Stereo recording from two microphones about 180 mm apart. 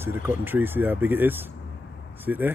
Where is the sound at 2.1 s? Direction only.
10° right (ahead or behind).